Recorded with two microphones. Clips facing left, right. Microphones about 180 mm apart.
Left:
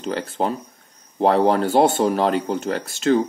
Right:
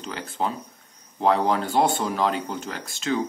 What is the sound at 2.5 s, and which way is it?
Speech, 45° left (ahead or behind).